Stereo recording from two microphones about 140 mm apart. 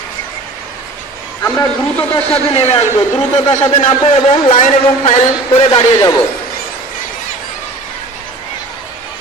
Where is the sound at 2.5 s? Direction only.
45° left (ahead or behind).